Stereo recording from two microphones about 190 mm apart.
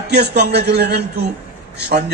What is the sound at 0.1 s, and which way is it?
A man's voice, 60° right (ahead or behind).